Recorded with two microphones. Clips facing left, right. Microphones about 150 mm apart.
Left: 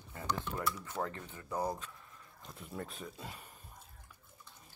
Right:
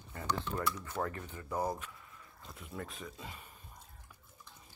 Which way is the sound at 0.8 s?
20° left (ahead or behind).